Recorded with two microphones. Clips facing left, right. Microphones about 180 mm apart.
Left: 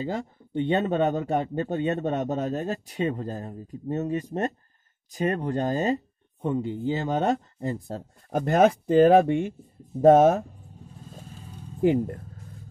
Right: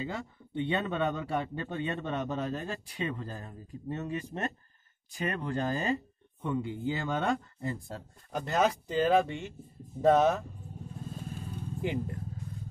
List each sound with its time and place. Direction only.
0.0 s a man's voice: 45° left (ahead or behind)
11.8 s a man's voice: 50° left (ahead or behind)